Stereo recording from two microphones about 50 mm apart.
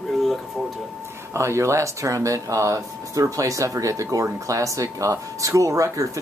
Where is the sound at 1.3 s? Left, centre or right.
Right.